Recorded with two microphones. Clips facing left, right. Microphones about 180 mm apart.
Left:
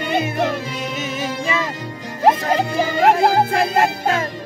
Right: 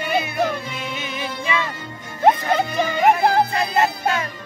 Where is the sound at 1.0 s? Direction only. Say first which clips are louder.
Left 4 dB; 40° left (ahead or behind).